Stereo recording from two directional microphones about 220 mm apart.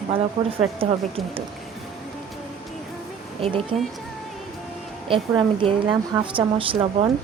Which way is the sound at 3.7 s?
25° right (ahead or behind).